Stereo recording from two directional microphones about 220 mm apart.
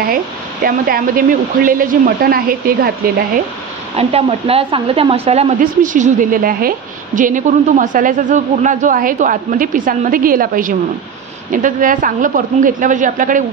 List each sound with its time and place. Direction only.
0.7 s a woman's voice: 40° right (ahead or behind)
4.1 s a woman's voice: 25° right (ahead or behind)